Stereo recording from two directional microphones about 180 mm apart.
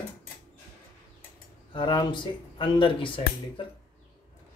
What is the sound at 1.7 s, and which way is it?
Speech, 25° left (ahead or behind).